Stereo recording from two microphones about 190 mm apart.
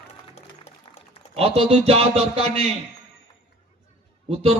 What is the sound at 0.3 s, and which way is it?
Music, 35° left (ahead or behind).